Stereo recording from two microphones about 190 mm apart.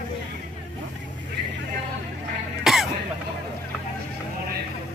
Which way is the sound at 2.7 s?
5° right (ahead or behind).